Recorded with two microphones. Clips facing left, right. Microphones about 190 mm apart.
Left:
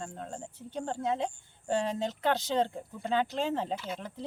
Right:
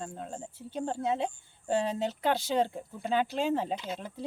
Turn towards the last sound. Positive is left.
turn(degrees=-15)  # may be behind; listen again after turning